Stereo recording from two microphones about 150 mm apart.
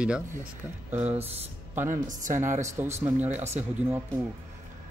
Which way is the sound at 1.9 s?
60° right (ahead or behind).